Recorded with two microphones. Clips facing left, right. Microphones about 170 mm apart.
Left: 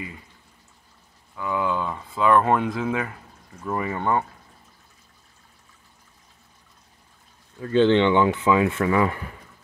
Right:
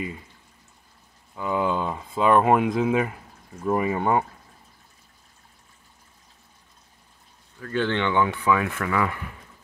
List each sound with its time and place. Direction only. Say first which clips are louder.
1.3 s speech: right 1 dB; 20° right (ahead or behind)
7.6 s speech: left 7 dB; 20° left (ahead or behind)